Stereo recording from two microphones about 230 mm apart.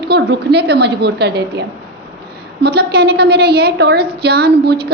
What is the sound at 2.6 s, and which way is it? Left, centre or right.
A woman's voice, right.